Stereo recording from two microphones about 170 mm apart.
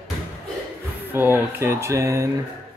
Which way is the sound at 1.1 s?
15° right (ahead or behind).